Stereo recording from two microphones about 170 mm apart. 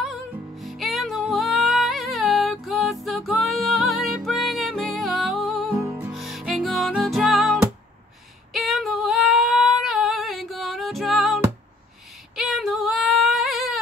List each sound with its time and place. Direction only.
0.0 s music: centre (ahead or behind)
5.7 s music: 15° right (ahead or behind)
6.1 s music: centre (ahead or behind)
8.5 s female singing: centre (ahead or behind)